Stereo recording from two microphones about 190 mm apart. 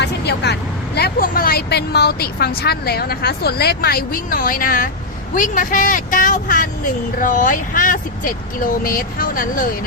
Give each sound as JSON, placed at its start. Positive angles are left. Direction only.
{"t": 0.0, "sound": "vehicle", "side_deg": 60}
{"t": 0.9, "sound": "speech", "side_deg": 55}